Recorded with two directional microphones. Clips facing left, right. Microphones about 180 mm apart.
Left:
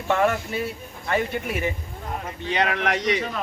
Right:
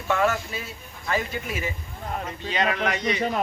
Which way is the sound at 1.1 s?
60° left (ahead or behind).